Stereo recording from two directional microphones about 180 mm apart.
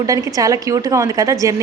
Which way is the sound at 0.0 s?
20° right (ahead or behind).